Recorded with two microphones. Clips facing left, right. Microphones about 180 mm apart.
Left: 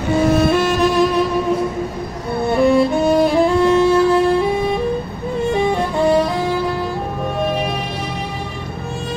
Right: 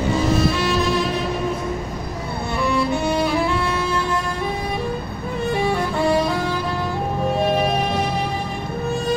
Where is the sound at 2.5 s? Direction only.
50° left (ahead or behind).